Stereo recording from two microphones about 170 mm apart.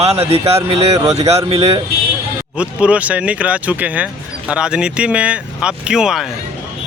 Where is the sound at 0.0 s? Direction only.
35° right (ahead or behind).